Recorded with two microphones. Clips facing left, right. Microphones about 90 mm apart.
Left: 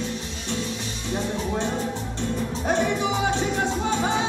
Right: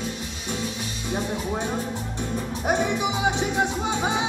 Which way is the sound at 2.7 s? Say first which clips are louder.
Even; 15° right (ahead or behind).